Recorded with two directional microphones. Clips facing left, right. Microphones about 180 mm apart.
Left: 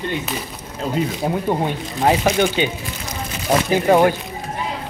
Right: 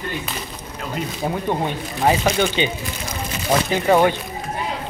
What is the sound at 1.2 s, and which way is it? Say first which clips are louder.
Speech: left 2 dB; 10° left (ahead or behind).